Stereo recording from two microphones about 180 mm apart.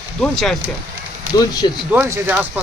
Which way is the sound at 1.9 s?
15° right (ahead or behind).